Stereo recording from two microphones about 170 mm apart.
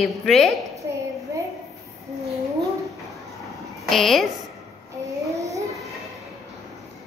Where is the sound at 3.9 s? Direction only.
Centre (ahead or behind).